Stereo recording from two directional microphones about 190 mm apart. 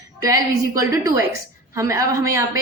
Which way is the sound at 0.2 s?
20° right (ahead or behind).